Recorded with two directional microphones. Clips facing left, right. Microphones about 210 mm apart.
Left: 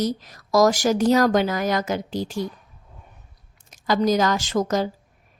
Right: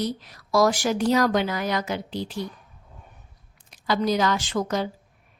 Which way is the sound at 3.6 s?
45° left (ahead or behind).